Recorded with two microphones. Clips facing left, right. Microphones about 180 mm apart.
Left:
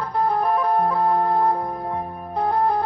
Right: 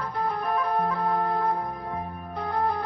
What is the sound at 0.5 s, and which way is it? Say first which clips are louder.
Music: left 6 dB; 30° left (ahead or behind).